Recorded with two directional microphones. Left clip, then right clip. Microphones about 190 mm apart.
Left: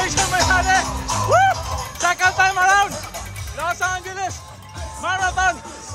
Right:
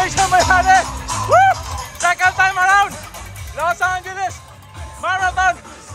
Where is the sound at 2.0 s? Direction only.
20° left (ahead or behind).